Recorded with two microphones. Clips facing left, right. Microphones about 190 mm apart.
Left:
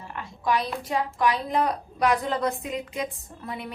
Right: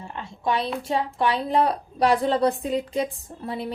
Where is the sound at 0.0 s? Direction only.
25° right (ahead or behind).